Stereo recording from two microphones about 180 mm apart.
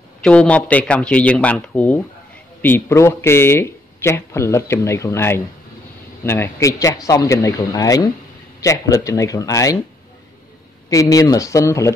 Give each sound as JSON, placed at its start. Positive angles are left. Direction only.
{"t": 0.2, "sound": "speech", "side_deg": 5}
{"t": 10.9, "sound": "speech", "side_deg": 20}